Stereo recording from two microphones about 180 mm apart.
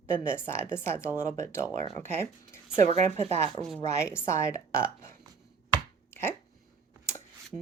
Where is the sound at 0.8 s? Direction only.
15° left (ahead or behind).